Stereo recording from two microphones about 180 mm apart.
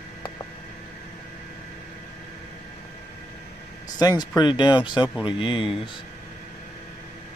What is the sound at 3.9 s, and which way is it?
Speech, 25° left (ahead or behind).